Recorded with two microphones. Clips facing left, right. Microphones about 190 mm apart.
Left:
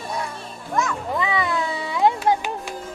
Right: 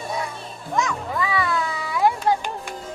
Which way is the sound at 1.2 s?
20° left (ahead or behind).